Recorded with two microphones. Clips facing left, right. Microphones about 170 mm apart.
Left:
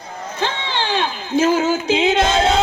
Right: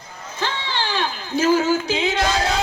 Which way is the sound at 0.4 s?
20° left (ahead or behind).